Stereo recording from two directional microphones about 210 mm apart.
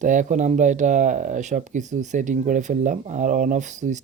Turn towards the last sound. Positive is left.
turn(degrees=-35)  # may be behind; listen again after turning